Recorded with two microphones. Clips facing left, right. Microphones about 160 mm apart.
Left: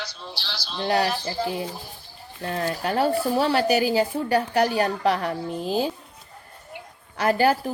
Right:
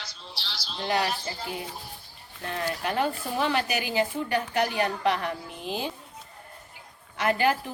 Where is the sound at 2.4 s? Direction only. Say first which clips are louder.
Left 4 dB; 40° left (ahead or behind).